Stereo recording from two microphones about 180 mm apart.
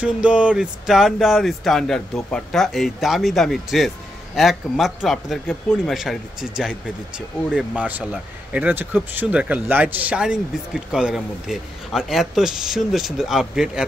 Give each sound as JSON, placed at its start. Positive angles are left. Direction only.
{"t": 0.0, "sound": "speech", "side_deg": -5}